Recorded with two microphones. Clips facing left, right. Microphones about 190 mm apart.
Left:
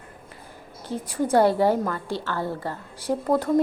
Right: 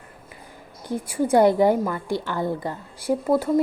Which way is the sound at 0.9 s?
10° right (ahead or behind).